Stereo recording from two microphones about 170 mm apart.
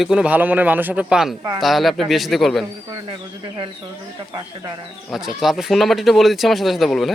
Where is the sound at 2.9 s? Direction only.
25° right (ahead or behind).